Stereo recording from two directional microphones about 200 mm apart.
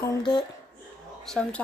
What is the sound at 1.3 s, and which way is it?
Speech, 5° left (ahead or behind).